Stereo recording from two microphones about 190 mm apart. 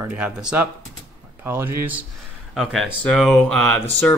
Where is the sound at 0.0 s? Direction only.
10° right (ahead or behind).